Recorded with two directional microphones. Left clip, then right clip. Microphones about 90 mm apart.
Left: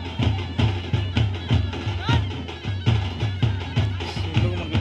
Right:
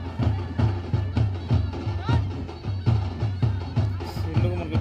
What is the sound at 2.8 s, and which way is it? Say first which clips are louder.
Music: left 4 dB; 25° right (ahead or behind).